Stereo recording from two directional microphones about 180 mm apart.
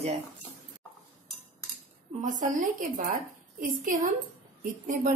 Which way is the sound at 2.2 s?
45° right (ahead or behind).